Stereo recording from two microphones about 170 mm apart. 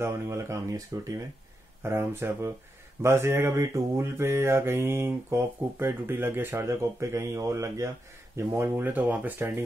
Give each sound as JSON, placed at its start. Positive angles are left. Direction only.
{"t": 0.0, "sound": "mantra", "side_deg": -15}